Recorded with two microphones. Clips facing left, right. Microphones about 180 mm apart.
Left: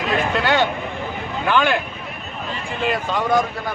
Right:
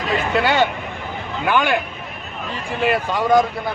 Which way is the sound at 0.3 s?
10° right (ahead or behind).